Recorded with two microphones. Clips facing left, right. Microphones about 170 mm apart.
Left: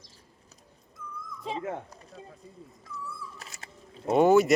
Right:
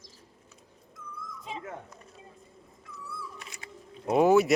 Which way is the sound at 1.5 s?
25° left (ahead or behind).